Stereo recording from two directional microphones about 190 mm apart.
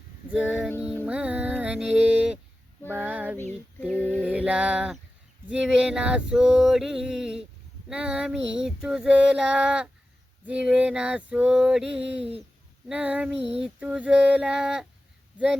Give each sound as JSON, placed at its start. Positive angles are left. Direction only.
{"t": 0.8, "sound": "music", "side_deg": -5}
{"t": 2.9, "sound": "female singing", "side_deg": -10}
{"t": 3.8, "sound": "a sound", "side_deg": 10}
{"t": 4.2, "sound": "music", "side_deg": -5}
{"t": 5.5, "sound": "female singing", "side_deg": -5}
{"t": 10.4, "sound": "music", "side_deg": -5}
{"t": 11.9, "sound": "speech", "side_deg": -70}
{"t": 12.9, "sound": "music", "side_deg": -10}
{"t": 13.6, "sound": "female singing", "side_deg": -5}